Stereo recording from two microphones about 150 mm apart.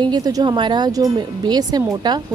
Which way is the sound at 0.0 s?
25° right (ahead or behind).